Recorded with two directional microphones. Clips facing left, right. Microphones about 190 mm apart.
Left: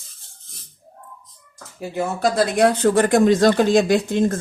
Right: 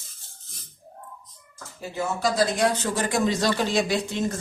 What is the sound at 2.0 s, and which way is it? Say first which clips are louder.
Speech: left 4 dB; 55° left (ahead or behind).